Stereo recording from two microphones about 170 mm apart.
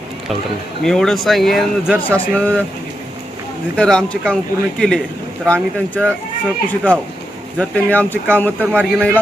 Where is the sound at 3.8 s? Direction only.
5° left (ahead or behind).